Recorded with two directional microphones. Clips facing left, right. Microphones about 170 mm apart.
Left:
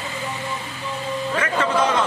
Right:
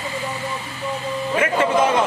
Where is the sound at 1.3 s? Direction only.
25° right (ahead or behind).